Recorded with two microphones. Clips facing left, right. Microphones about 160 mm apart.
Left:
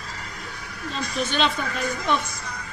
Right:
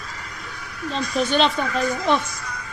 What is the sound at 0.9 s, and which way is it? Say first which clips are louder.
Speech: right 5 dB; 40° right (ahead or behind).